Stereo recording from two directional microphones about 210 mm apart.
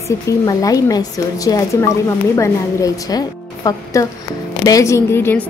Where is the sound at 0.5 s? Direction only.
15° left (ahead or behind).